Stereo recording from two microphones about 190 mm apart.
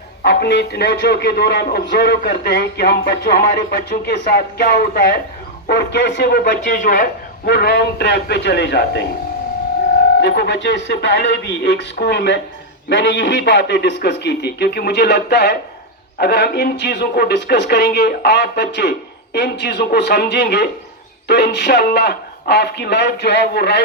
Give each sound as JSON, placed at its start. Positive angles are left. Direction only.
{"t": 0.2, "sound": "speech", "side_deg": 55}
{"t": 10.2, "sound": "speech", "side_deg": 65}